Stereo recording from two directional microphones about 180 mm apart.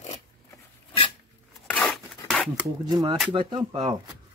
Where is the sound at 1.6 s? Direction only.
5° left (ahead or behind).